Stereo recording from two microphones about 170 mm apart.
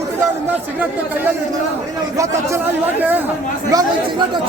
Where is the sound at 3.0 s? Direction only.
10° right (ahead or behind).